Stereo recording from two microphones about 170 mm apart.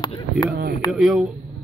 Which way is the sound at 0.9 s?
Centre (ahead or behind).